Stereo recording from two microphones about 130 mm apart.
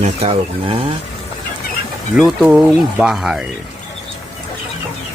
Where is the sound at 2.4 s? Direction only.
10° right (ahead or behind).